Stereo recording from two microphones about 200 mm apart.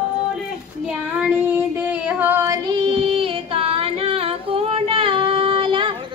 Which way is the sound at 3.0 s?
30° right (ahead or behind).